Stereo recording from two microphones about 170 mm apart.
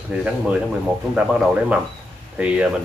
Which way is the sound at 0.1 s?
10° right (ahead or behind).